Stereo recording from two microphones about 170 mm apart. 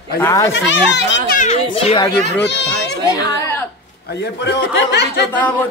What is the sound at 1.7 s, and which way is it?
Speech, 35° left (ahead or behind).